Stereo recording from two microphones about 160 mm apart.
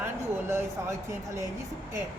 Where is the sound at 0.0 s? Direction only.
15° right (ahead or behind).